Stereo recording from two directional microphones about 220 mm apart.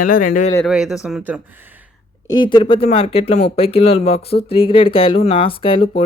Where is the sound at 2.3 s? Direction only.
20° left (ahead or behind).